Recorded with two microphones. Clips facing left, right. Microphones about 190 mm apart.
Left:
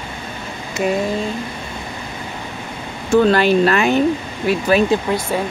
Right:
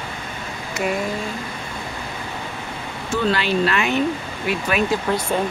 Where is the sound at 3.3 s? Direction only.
45° left (ahead or behind).